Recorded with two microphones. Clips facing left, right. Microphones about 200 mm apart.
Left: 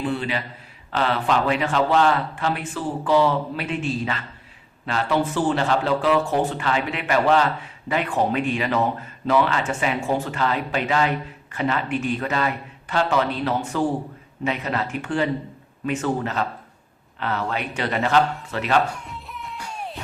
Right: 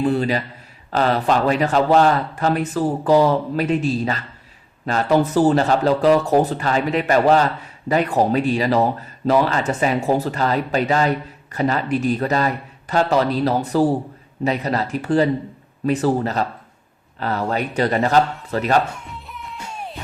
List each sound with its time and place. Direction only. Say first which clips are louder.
0.0 s speech: right 6 dB; 40° right (ahead or behind)
19.0 s music: even; centre (ahead or behind)